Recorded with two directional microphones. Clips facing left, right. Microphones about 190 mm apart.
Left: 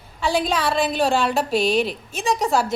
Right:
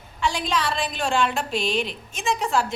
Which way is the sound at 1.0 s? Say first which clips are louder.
Left 4 dB; 35° left (ahead or behind).